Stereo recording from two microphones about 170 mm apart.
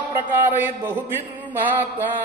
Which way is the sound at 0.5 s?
10° right (ahead or behind).